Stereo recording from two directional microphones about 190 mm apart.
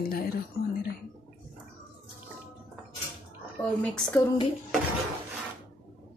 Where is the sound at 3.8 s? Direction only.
10° left (ahead or behind).